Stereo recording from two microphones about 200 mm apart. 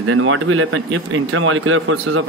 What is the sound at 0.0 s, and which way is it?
Speech, 90° right.